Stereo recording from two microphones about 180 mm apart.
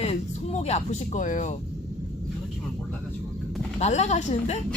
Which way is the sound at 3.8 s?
40° left (ahead or behind).